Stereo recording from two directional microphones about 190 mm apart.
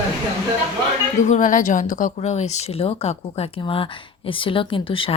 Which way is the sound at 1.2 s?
40° left (ahead or behind).